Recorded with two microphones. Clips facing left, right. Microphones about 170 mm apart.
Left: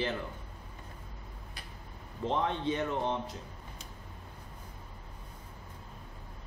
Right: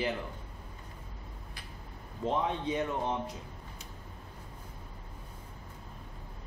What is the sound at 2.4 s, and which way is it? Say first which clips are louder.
Speech: even; 15° right (ahead or behind).